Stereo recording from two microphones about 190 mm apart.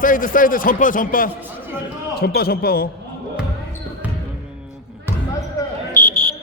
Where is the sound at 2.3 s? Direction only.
55° left (ahead or behind).